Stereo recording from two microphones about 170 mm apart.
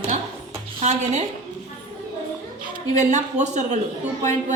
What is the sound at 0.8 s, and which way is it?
Speech, 40° right (ahead or behind).